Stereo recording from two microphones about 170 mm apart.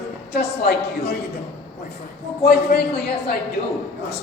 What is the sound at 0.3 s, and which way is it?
Speech, 70° left (ahead or behind).